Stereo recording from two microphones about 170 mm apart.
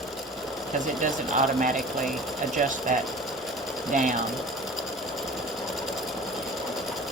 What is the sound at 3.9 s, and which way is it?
Speech, 50° right (ahead or behind).